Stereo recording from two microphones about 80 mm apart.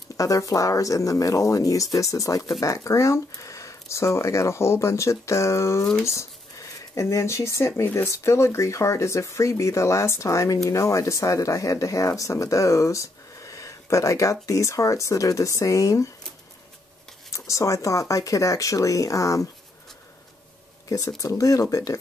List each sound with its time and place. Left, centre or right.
0.2 s speech: left
17.3 s speech: left
21.2 s speech: left